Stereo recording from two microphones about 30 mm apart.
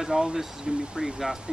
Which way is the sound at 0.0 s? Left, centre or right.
Right.